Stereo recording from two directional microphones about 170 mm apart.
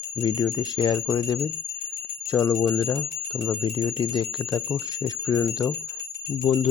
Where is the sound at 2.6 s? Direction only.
20° left (ahead or behind).